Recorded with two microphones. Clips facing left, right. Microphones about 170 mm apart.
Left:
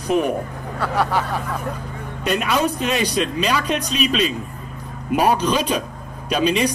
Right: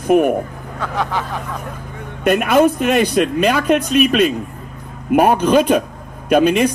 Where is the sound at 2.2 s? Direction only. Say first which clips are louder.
Right 7 dB; 50° right (ahead or behind).